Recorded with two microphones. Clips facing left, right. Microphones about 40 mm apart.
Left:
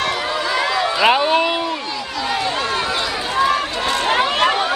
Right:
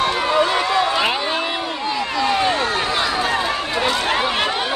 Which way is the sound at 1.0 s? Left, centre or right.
Left.